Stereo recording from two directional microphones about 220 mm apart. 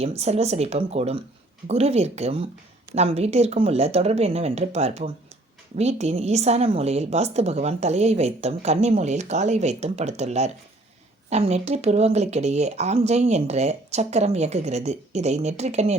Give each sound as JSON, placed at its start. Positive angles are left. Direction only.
{"t": 0.0, "sound": "a woman's voice", "side_deg": -30}